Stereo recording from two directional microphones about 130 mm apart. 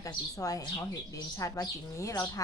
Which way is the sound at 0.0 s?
25° left (ahead or behind).